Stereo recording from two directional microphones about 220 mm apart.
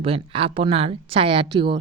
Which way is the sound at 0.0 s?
25° right (ahead or behind).